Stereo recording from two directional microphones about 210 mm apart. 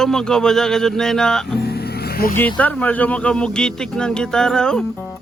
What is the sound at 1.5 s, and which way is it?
Music, 50° left (ahead or behind).